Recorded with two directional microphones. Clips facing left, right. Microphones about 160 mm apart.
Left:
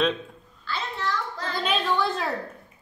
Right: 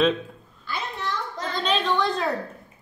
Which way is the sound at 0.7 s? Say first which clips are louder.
Left 1 dB; 15° right (ahead or behind).